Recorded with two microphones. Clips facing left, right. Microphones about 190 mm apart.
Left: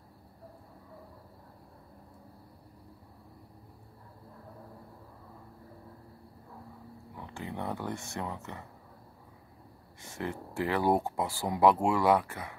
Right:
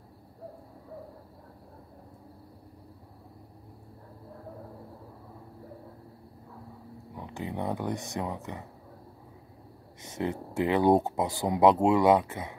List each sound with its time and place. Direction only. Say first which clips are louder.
7.2 s speech: right 4 dB; 20° right (ahead or behind)
10.0 s speech: right 5 dB; 20° right (ahead or behind)